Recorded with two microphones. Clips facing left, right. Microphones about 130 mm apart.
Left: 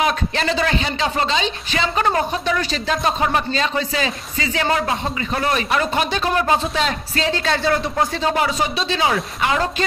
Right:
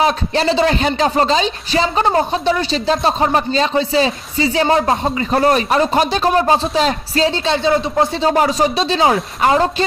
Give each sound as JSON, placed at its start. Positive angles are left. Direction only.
{"t": 0.0, "sound": "speech", "side_deg": -35}
{"t": 0.7, "sound": "speech", "side_deg": -45}